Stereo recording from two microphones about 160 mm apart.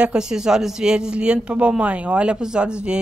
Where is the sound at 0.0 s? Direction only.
5° right (ahead or behind).